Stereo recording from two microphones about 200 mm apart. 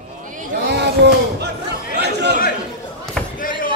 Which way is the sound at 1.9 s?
55° right (ahead or behind).